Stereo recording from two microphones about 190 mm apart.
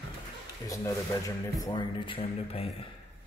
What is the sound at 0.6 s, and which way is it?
Speech, 15° left (ahead or behind).